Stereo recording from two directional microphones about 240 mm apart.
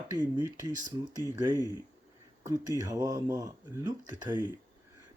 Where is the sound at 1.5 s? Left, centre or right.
Centre.